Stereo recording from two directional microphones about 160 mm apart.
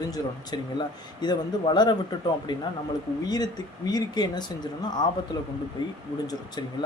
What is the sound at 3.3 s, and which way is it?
Speech, 25° left (ahead or behind).